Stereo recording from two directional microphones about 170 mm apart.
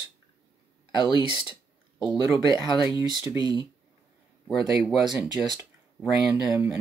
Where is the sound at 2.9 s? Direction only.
20° right (ahead or behind).